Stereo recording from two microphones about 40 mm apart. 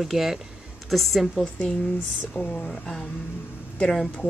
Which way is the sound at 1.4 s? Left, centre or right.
Left.